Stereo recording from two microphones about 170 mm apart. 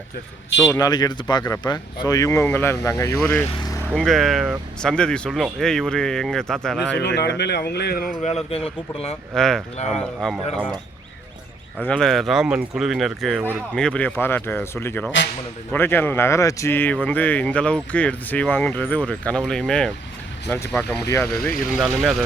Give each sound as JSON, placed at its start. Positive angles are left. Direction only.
{"t": 0.7, "sound": "speech", "side_deg": 20}
{"t": 3.9, "sound": "speech", "side_deg": 0}
{"t": 7.0, "sound": "speech", "side_deg": 85}
{"t": 8.4, "sound": "a man's voice", "side_deg": 35}
{"t": 9.3, "sound": "speech", "side_deg": 5}
{"t": 11.9, "sound": "speech", "side_deg": 5}
{"t": 21.8, "sound": "speech", "side_deg": 0}